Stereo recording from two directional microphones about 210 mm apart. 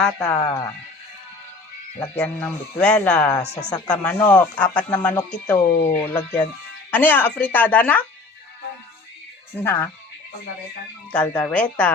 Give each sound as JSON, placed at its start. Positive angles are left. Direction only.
{"t": 0.0, "sound": "speech", "side_deg": 5}
{"t": 0.3, "sound": "speech", "side_deg": 15}
{"t": 2.0, "sound": "speech", "side_deg": 10}
{"t": 9.6, "sound": "speech", "side_deg": 10}
{"t": 11.1, "sound": "speech", "side_deg": 5}